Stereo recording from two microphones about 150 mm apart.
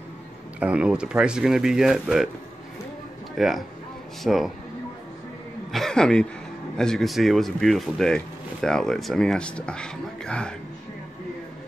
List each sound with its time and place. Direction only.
0.6 s speech: 10° right (ahead or behind)
3.3 s speech: centre (ahead or behind)
5.7 s a man's voice: 5° left (ahead or behind)